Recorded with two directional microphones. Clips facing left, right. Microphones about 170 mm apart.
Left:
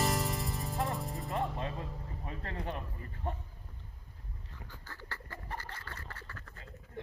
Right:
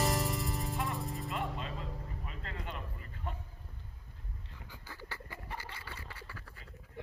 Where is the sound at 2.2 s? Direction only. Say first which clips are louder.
Left 7 dB; 35° left (ahead or behind).